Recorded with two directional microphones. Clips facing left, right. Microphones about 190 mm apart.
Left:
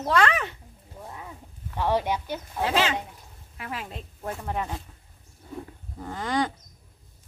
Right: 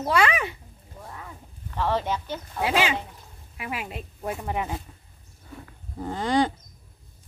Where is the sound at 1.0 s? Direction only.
20° left (ahead or behind).